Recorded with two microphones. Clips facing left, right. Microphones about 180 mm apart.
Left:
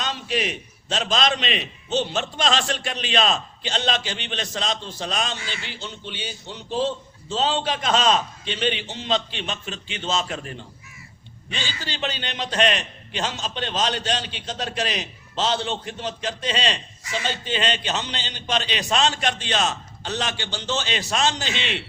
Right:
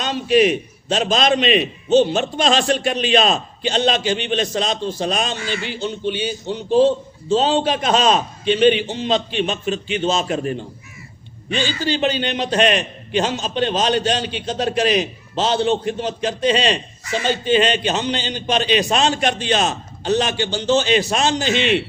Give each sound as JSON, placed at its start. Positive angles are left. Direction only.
{"t": 0.0, "sound": "a man's voice", "side_deg": -15}
{"t": 5.4, "sound": "a man's voice", "side_deg": -55}
{"t": 5.6, "sound": "a man's voice", "side_deg": -15}
{"t": 11.5, "sound": "a man's voice", "side_deg": -50}
{"t": 11.8, "sound": "a man's voice", "side_deg": -15}
{"t": 17.0, "sound": "speech", "side_deg": -50}
{"t": 17.4, "sound": "a man's voice", "side_deg": -15}
{"t": 21.4, "sound": "a man's voice", "side_deg": -50}